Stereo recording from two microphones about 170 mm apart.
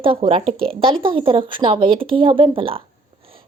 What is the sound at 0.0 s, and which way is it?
A woman's voice, 35° right (ahead or behind).